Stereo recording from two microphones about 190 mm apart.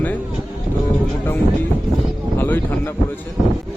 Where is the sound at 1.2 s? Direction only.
10° left (ahead or behind).